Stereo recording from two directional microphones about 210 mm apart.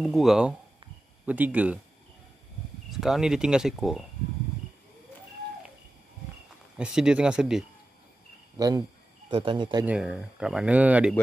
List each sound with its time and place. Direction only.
0.0 s speech: centre (ahead or behind)
2.9 s speech: centre (ahead or behind)
6.8 s speech: 5° right (ahead or behind)
8.5 s speech: 15° right (ahead or behind)
9.8 s speech: 5° right (ahead or behind)